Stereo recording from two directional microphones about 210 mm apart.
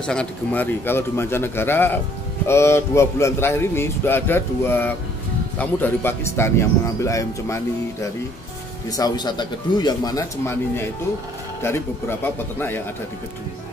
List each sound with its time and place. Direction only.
0.0 s a man's voice: 5° left (ahead or behind)